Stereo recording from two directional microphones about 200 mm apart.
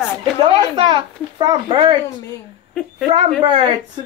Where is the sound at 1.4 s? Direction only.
20° right (ahead or behind).